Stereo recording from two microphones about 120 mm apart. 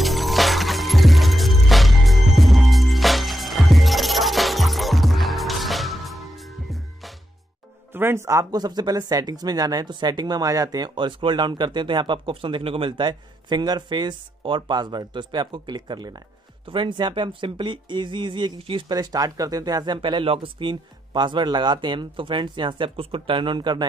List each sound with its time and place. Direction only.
0.0 s music: centre (ahead or behind)
7.9 s speech: 20° right (ahead or behind); by 18.9 s 45° right (ahead or behind)
18.9 s speech: 30° right (ahead or behind)